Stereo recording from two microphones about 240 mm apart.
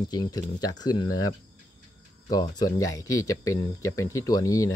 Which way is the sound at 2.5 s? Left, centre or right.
Centre.